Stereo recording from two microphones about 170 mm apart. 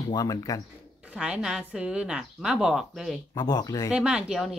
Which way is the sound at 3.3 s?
25° left (ahead or behind).